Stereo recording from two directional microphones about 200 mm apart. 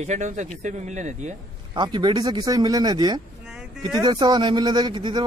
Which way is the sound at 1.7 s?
20° right (ahead or behind).